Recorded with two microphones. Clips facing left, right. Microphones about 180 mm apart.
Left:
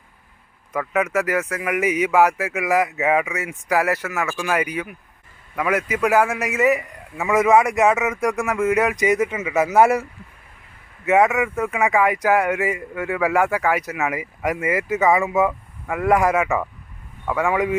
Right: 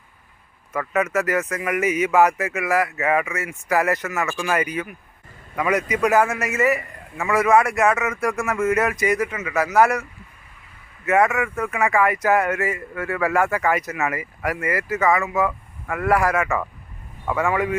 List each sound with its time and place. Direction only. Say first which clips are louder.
0.7 s speech: left 1 dB; 10° left (ahead or behind)